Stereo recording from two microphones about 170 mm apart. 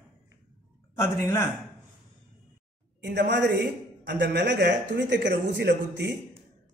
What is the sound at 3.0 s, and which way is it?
A man's voice, 80° right.